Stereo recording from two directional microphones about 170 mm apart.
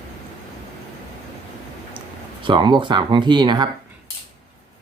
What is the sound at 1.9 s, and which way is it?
Speech, 30° right (ahead or behind).